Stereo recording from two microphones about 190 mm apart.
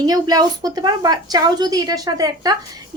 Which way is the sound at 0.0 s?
20° right (ahead or behind).